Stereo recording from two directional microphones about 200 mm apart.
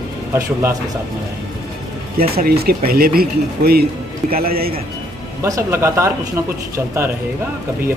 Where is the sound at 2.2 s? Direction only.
50° right (ahead or behind).